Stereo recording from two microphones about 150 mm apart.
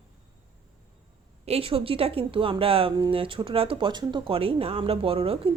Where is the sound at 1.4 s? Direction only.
40° right (ahead or behind).